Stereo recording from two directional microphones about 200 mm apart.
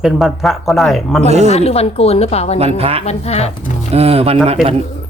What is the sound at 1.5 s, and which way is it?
A woman's voice, 30° left (ahead or behind).